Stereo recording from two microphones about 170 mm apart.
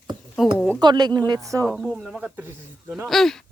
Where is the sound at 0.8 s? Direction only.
25° right (ahead or behind).